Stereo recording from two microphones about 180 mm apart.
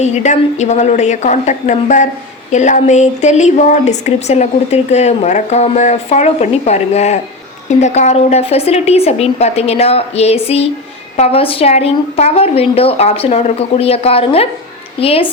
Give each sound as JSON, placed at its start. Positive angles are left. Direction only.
{"t": 0.0, "sound": "speech", "side_deg": 40}